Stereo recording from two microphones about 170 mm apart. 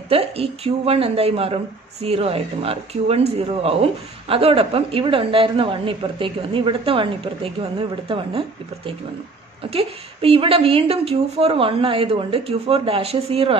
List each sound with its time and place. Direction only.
0.1 s speech: 35° right (ahead or behind)